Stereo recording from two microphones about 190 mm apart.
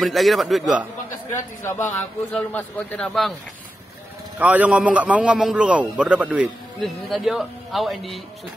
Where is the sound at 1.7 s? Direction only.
10° left (ahead or behind).